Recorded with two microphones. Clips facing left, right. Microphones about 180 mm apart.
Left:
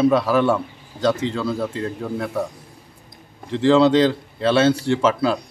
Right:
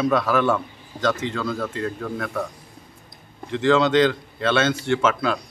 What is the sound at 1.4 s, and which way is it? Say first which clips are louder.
Speech: left 3 dB; 10° left (ahead or behind).